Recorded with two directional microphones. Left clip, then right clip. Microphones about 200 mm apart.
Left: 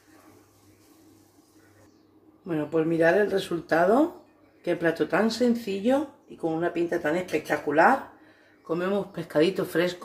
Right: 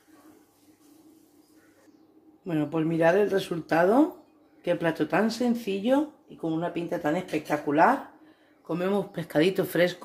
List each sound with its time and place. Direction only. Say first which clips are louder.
2.4 s speech: left 2 dB; 35° right (ahead or behind)